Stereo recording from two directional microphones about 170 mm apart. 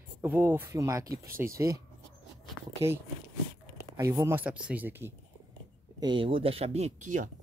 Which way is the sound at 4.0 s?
15° right (ahead or behind).